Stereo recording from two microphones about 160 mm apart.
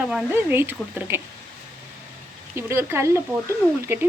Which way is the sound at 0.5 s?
15° right (ahead or behind).